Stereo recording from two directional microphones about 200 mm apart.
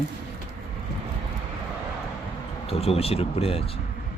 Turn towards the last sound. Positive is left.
turn(degrees=30)  # may be behind; listen again after turning